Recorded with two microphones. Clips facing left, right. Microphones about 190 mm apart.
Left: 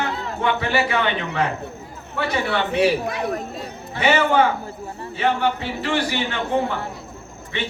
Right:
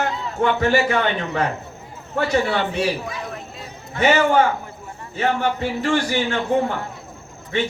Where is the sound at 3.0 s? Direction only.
60° left (ahead or behind).